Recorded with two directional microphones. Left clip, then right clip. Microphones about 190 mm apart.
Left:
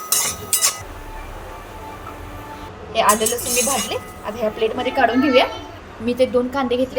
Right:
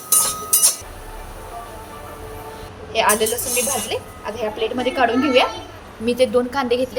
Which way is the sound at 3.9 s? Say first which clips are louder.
Even; 10° left (ahead or behind).